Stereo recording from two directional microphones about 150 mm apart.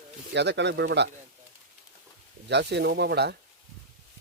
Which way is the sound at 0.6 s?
90° right.